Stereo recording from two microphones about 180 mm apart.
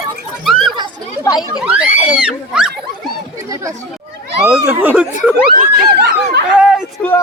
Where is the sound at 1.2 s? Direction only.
20° left (ahead or behind).